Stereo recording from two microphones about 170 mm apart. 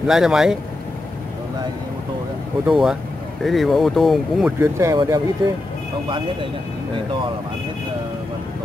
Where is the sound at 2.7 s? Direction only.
5° right (ahead or behind).